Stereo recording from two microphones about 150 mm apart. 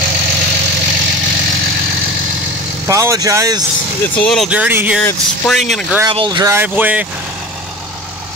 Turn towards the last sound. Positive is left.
turn(degrees=-10)  # may be behind; listen again after turning